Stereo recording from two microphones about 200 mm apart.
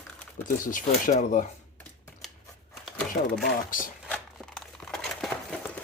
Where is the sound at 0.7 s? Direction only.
40° left (ahead or behind).